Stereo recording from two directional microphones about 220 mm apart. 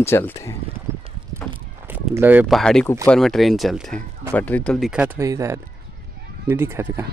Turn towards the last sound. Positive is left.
turn(degrees=-10)  # may be behind; listen again after turning